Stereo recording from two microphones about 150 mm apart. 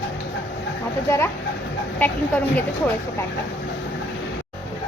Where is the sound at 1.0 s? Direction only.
15° left (ahead or behind).